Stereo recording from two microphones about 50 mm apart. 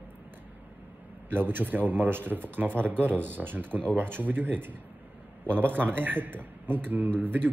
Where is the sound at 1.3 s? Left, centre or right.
Right.